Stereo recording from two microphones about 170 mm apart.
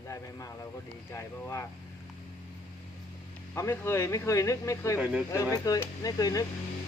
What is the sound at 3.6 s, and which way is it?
Speech, 15° left (ahead or behind).